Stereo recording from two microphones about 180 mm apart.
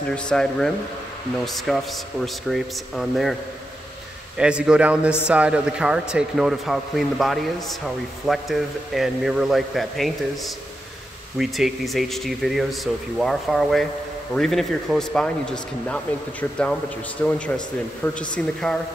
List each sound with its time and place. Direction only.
0.1 s speech: 5° left (ahead or behind)
4.4 s speech: 5° right (ahead or behind)